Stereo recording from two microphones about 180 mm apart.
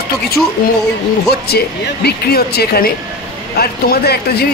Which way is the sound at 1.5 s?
65° left (ahead or behind).